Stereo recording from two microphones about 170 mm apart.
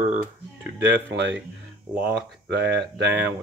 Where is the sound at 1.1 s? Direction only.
90° right.